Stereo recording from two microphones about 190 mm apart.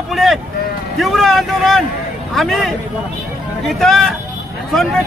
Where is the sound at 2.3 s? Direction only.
Centre (ahead or behind).